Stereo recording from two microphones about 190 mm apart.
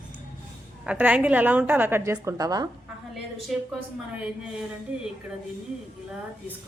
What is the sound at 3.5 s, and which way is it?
Speech, centre (ahead or behind).